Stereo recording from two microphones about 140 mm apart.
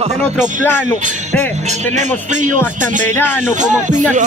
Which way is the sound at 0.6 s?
15° left (ahead or behind).